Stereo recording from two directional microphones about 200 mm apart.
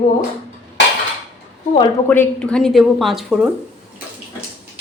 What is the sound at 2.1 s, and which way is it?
A woman's voice, 5° left (ahead or behind).